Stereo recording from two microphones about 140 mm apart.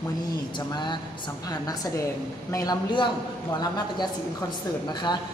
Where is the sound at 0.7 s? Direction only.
35° left (ahead or behind).